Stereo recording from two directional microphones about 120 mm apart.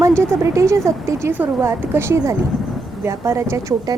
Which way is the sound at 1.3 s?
15° right (ahead or behind).